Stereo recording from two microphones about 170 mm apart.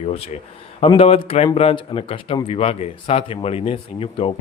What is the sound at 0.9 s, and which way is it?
Speech, 35° left (ahead or behind).